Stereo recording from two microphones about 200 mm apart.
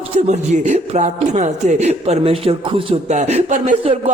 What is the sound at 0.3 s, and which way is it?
Speech, 35° right (ahead or behind).